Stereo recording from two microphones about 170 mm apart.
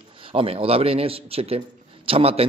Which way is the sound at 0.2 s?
35° right (ahead or behind).